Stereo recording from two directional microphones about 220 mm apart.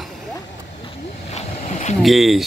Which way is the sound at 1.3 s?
30° left (ahead or behind).